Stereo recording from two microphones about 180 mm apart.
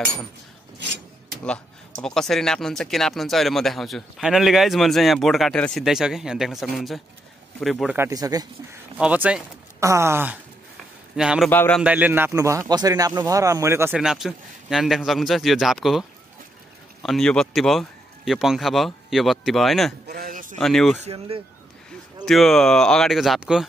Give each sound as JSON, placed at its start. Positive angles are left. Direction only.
{"t": 2.0, "sound": "speech", "side_deg": 0}
{"t": 7.9, "sound": "speech", "side_deg": -15}
{"t": 8.9, "sound": "a man's voice", "side_deg": -5}
{"t": 11.5, "sound": "a man's voice", "side_deg": 10}
{"t": 11.8, "sound": "a man's voice", "side_deg": -10}
{"t": 20.1, "sound": "a sound", "side_deg": -55}
{"t": 20.5, "sound": "speech", "side_deg": 5}
{"t": 21.0, "sound": "speech", "side_deg": -35}
{"t": 22.2, "sound": "speech", "side_deg": 0}